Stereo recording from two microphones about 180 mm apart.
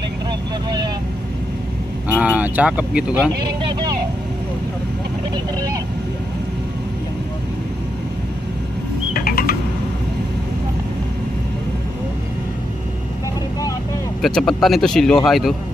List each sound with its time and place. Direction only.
0.7 s vehicle: 25° right (ahead or behind)
2.0 s speech: 5° right (ahead or behind)
9.1 s bird: 55° left (ahead or behind)
14.2 s speech: centre (ahead or behind)